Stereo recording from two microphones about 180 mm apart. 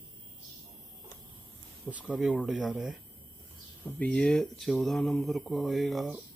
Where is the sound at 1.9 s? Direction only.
5° right (ahead or behind).